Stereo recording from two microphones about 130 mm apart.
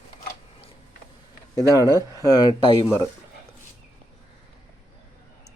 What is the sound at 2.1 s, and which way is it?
Speech, 30° left (ahead or behind).